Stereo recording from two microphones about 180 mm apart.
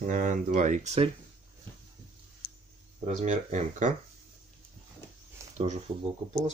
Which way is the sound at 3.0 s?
40° right (ahead or behind).